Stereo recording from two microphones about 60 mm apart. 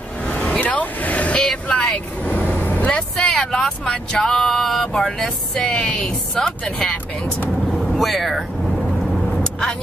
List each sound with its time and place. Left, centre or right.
0.2 s vehicle: centre
2.2 s vehicle: left
3.3 s speech: centre
7.7 s vehicle: centre